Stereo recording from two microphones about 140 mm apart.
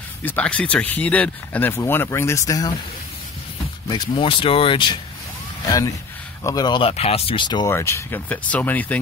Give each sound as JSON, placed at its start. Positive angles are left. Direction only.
{"t": 0.2, "sound": "speech", "side_deg": 10}
{"t": 3.9, "sound": "speech", "side_deg": 35}
{"t": 6.4, "sound": "speech", "side_deg": 30}
{"t": 7.7, "sound": "speech", "side_deg": 20}